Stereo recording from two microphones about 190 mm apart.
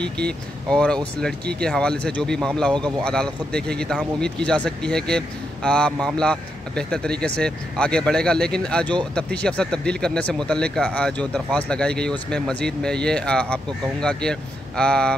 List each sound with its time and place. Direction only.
0.0 s speech: 5° left (ahead or behind)